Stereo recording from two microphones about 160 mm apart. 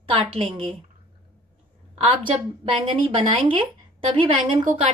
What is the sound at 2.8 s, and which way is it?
Speech, 30° right (ahead or behind).